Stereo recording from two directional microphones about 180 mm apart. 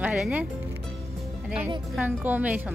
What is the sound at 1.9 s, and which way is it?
Speech, 5° right (ahead or behind).